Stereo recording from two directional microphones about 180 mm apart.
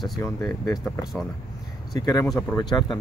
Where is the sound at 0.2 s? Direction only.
20° left (ahead or behind).